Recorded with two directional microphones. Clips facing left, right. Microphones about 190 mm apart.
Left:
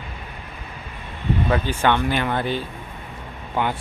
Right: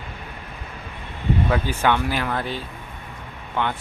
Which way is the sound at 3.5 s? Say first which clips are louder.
Left 2 dB; 10° left (ahead or behind).